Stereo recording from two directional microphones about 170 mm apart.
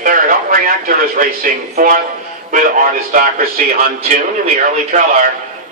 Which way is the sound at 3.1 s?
55° right (ahead or behind).